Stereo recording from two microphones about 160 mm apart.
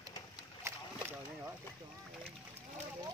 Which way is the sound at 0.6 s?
15° right (ahead or behind).